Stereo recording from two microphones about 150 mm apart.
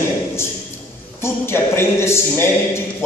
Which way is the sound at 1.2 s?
15° left (ahead or behind).